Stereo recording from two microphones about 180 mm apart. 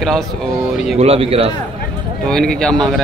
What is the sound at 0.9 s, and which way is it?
Speech, 35° right (ahead or behind).